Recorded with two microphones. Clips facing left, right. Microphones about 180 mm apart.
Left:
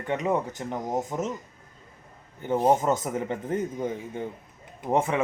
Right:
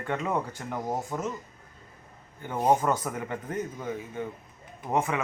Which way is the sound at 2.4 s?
25° left (ahead or behind).